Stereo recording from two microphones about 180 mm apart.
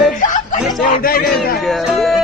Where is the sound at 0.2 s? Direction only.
45° left (ahead or behind).